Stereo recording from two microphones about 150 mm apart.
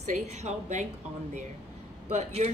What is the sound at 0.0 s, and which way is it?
Speech, 50° right (ahead or behind).